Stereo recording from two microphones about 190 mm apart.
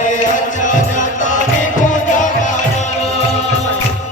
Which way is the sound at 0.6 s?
40° left (ahead or behind).